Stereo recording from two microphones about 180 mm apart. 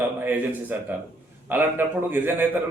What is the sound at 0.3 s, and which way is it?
A man's voice, 10° right (ahead or behind).